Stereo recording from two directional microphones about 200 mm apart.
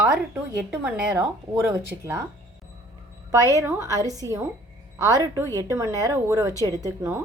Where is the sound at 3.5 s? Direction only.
15° right (ahead or behind).